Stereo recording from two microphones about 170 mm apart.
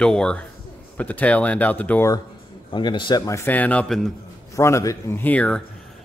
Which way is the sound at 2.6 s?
30° left (ahead or behind).